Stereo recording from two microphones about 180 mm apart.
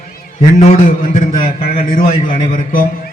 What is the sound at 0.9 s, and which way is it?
A man's voice, 45° left (ahead or behind).